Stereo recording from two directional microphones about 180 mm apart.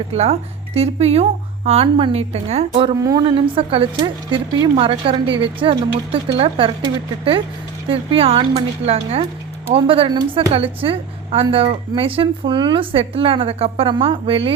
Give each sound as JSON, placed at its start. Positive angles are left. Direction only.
{"t": 0.1, "sound": "a woman's voice", "side_deg": -35}